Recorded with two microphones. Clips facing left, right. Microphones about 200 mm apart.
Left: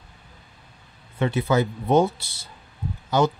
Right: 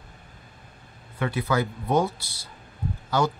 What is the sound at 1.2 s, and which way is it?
Speech, 25° left (ahead or behind).